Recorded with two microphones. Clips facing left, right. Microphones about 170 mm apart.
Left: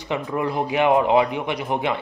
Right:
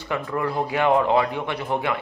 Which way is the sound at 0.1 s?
20° left (ahead or behind).